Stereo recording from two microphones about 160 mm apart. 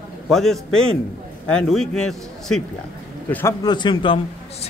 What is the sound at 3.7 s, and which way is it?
Speech, 30° left (ahead or behind).